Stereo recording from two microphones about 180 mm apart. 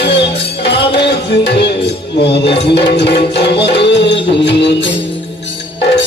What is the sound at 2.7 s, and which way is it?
Music, 70° left (ahead or behind).